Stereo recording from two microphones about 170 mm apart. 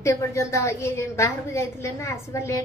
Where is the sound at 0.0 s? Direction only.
15° left (ahead or behind).